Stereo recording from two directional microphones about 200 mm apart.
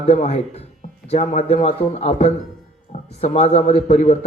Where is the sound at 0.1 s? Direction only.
35° left (ahead or behind).